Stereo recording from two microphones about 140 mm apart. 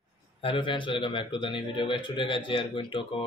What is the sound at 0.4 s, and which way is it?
A man's voice, 40° left (ahead or behind).